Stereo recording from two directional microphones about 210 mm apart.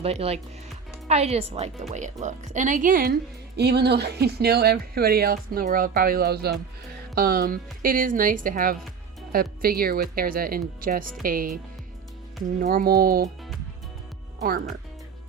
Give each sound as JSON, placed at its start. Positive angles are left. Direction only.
{"t": 0.0, "sound": "a woman's voice", "side_deg": -30}
{"t": 14.4, "sound": "speech", "side_deg": -45}